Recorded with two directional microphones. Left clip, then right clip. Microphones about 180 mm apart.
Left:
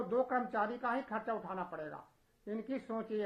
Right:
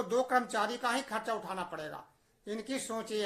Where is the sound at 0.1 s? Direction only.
25° right (ahead or behind).